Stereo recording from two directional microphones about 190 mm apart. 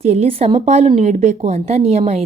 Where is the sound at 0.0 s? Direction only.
35° right (ahead or behind).